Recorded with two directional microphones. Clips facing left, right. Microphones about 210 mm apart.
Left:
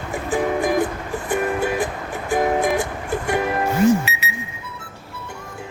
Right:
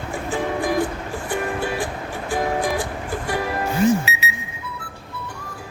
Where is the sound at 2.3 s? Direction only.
25° left (ahead or behind).